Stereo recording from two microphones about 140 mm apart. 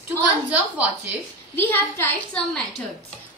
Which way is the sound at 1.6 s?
15° left (ahead or behind).